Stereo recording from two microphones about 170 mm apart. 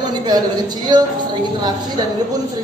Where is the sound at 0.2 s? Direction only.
25° right (ahead or behind).